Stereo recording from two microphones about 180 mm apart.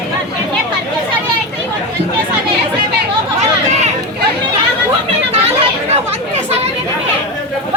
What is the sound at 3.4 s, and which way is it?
Chatter, 40° right (ahead or behind).